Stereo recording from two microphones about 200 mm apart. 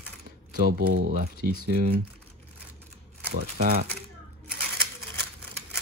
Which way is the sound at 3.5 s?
50° right (ahead or behind).